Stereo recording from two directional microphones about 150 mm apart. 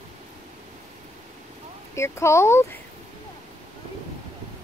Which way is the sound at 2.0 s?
20° left (ahead or behind).